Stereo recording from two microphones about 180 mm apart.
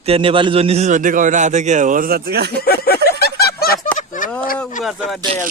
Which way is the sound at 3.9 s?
45° left (ahead or behind).